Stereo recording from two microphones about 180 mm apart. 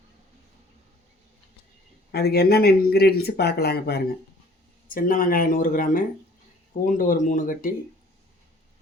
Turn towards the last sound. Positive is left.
turn(degrees=50)  # may be behind; listen again after turning